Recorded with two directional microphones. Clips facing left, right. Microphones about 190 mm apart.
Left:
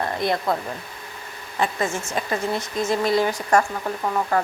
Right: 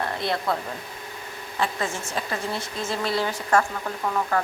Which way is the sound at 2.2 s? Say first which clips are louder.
Left 4 dB; 15° left (ahead or behind).